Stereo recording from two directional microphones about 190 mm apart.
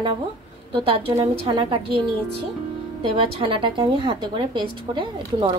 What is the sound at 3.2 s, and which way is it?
Speech, 30° right (ahead or behind).